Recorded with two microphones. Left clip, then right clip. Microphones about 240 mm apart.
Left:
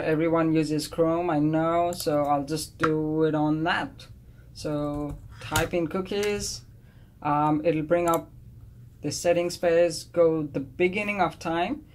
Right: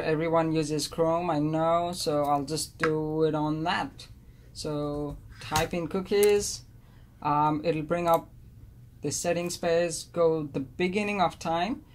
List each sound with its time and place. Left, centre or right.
0.0 s speech: right